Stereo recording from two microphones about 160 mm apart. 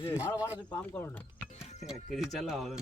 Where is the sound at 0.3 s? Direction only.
10° right (ahead or behind).